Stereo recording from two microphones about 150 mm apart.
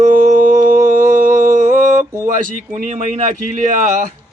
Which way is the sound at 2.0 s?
20° right (ahead or behind).